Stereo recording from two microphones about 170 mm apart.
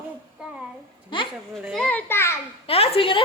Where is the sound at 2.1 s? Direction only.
15° left (ahead or behind).